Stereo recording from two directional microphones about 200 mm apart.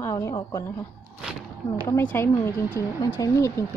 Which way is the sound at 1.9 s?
10° left (ahead or behind).